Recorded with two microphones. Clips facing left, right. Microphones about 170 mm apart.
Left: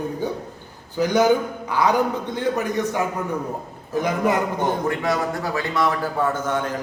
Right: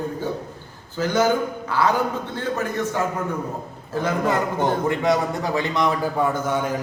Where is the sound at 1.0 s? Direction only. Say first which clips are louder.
Left 2 dB; 15° left (ahead or behind).